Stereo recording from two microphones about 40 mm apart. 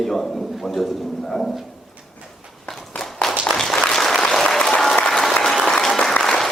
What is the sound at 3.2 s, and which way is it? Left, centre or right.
Applause, centre.